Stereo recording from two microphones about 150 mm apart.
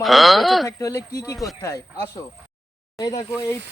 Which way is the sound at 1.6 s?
20° left (ahead or behind).